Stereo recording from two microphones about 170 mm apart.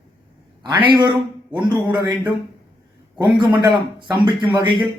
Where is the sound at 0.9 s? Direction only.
25° right (ahead or behind).